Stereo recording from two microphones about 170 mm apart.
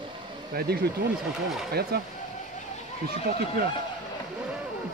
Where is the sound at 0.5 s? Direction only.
65° right (ahead or behind).